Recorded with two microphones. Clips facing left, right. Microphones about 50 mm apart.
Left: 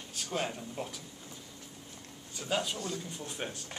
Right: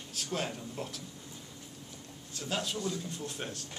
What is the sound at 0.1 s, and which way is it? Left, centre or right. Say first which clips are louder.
Speech: left 1 dB; centre.